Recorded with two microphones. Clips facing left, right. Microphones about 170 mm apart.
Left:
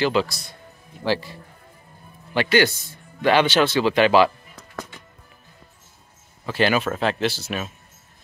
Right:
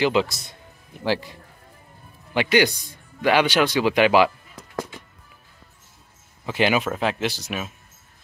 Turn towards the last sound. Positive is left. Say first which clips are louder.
# left 2 dB
turn(degrees=-10)  # may be behind; listen again after turning